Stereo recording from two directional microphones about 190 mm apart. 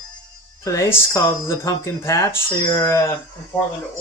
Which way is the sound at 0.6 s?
15° left (ahead or behind).